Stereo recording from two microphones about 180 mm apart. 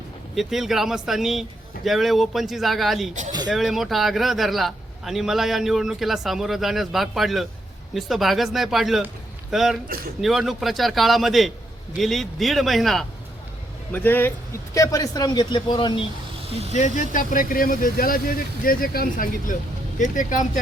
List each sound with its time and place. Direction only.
0.3 s a man's voice: centre (ahead or behind)
13.9 s a man's voice: 10° left (ahead or behind)
16.7 s speech: 45° left (ahead or behind)